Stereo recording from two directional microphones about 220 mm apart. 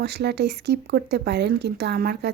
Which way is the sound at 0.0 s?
50° right (ahead or behind).